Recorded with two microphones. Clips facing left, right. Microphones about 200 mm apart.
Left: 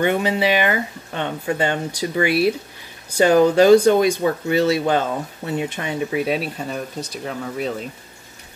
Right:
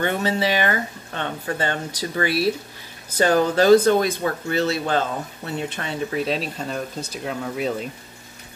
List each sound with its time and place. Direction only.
0.0 s speech: 15° left (ahead or behind); by 7.7 s centre (ahead or behind)